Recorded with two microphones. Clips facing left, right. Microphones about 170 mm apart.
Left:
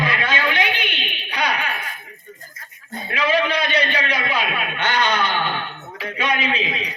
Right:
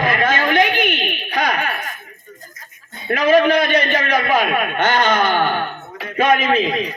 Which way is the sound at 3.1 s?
45° right (ahead or behind).